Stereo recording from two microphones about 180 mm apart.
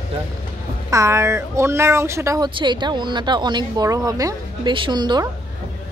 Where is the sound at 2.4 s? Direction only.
25° right (ahead or behind).